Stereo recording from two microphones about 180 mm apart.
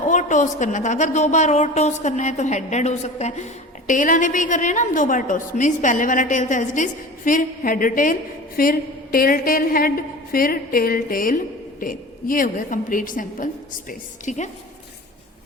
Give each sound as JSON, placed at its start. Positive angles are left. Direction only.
{"t": 0.1, "sound": "a woman's voice", "side_deg": 45}